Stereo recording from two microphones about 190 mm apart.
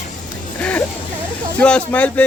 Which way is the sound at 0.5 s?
10° left (ahead or behind).